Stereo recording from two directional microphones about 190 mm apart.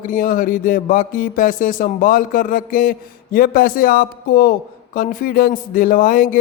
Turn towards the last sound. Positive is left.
turn(degrees=45)  # may be behind; listen again after turning